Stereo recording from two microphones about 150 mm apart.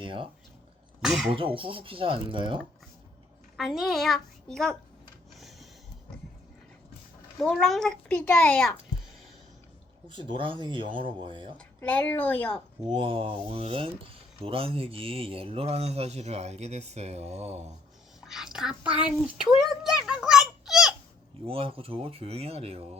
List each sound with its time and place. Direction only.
0.0 s speech: 35° right (ahead or behind)
1.0 s a child's voice: centre (ahead or behind)
1.3 s speech: 35° right (ahead or behind)
3.6 s a child's voice: centre (ahead or behind)
5.4 s a sound: centre (ahead or behind)
7.3 s a child's voice: centre (ahead or behind)
10.1 s speech: 35° right (ahead or behind)
11.5 s speech: 10° left (ahead or behind)
12.9 s speech: 40° right (ahead or behind)
18.2 s a child's voice: centre (ahead or behind)
21.4 s speech: 40° right (ahead or behind)